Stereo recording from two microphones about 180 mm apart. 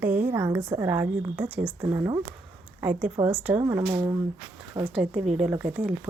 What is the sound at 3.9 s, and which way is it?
Speech, 25° right (ahead or behind).